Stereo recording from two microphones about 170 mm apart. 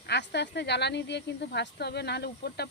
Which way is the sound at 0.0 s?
85° left.